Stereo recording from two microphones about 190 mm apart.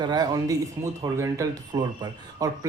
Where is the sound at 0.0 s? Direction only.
20° right (ahead or behind).